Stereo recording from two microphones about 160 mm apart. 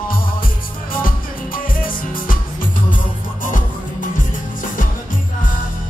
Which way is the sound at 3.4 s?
55° left (ahead or behind).